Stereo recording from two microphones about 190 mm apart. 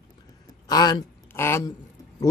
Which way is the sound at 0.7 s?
20° left (ahead or behind).